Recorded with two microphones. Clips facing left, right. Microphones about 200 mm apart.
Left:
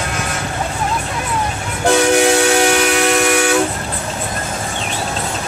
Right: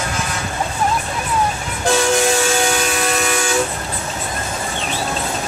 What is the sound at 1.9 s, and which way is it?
Train, 65° left (ahead or behind).